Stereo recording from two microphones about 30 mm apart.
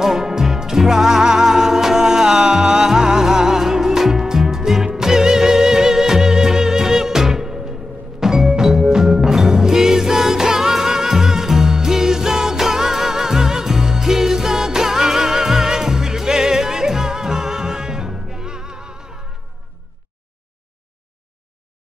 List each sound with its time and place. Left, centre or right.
0.0 s music: centre